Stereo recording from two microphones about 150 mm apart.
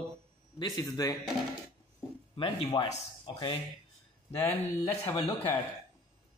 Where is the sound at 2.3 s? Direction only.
35° left (ahead or behind).